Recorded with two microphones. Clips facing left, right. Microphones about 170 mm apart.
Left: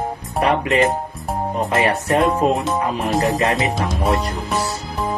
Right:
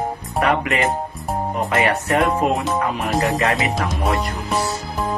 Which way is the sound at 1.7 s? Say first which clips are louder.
Left 1 dB; 30° left (ahead or behind).